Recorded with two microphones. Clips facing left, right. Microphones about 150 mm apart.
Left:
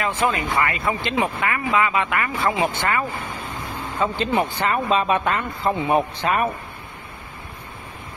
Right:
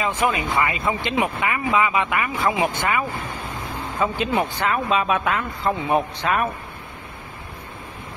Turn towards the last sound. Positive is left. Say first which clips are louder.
# left 1 dB
turn(degrees=0)  # may be behind; listen again after turning